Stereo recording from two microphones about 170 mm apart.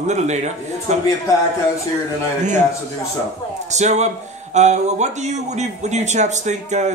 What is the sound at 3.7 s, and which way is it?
Speech, 40° right (ahead or behind).